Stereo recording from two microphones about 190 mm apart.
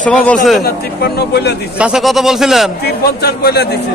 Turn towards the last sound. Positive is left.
turn(degrees=60)  # may be behind; listen again after turning